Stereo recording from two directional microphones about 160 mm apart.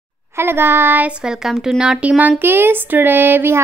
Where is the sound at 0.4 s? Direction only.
15° right (ahead or behind).